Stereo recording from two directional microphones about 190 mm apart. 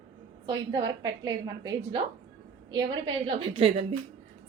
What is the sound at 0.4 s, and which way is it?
A woman's voice, 25° right (ahead or behind).